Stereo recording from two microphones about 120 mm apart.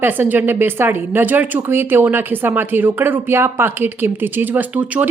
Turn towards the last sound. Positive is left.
turn(degrees=-15)  # may be behind; listen again after turning